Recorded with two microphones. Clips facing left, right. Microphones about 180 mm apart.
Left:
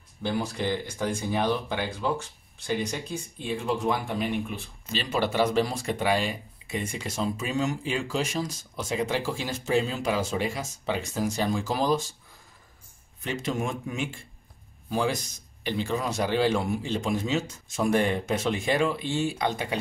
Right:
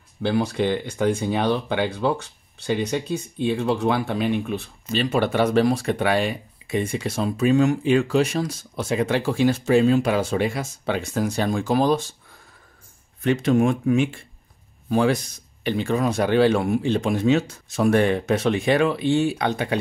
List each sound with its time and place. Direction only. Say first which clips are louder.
0.2 s speech: right 7 dB; 70° right (ahead or behind)
5.0 s speech: right 4 dB; 55° right (ahead or behind)
13.2 s a man's voice: right 11 dB; 60° right (ahead or behind)